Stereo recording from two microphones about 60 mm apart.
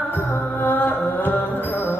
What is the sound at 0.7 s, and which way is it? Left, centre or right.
Music, left.